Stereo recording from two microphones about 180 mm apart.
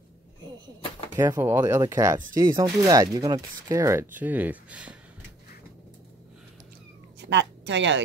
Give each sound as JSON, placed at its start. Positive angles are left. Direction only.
{"t": 1.1, "sound": "speech", "side_deg": -15}
{"t": 7.2, "sound": "speech", "side_deg": -75}